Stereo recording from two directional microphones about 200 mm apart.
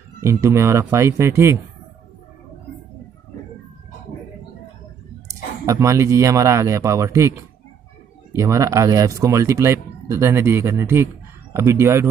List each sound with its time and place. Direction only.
0.2 s speech: 15° right (ahead or behind)
5.3 s speech: 15° right (ahead or behind)